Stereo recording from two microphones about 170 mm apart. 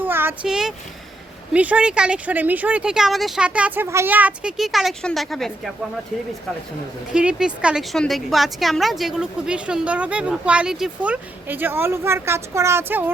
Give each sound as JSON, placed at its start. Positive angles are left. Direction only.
{"t": 0.0, "sound": "a sound", "side_deg": -15}
{"t": 1.5, "sound": "speech", "side_deg": -10}
{"t": 7.1, "sound": "a woman's voice", "side_deg": -5}